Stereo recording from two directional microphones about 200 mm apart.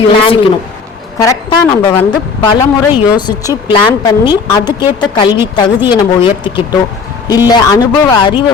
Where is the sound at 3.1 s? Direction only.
20° left (ahead or behind).